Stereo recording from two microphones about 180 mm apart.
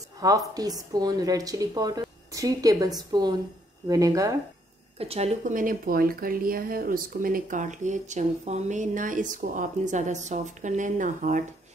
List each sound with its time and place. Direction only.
0.2 s speech: 20° right (ahead or behind)
4.9 s speech: 35° right (ahead or behind)